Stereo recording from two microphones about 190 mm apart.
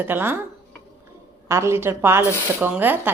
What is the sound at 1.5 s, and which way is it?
A woman's voice, 15° right (ahead or behind).